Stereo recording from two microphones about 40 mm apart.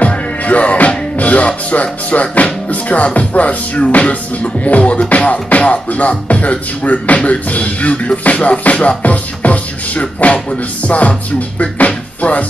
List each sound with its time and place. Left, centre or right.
0.0 s music: left